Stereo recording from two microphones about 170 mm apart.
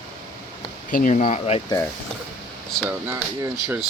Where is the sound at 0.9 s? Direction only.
50° left (ahead or behind).